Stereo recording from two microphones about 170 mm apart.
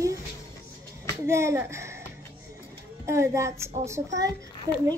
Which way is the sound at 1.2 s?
15° right (ahead or behind).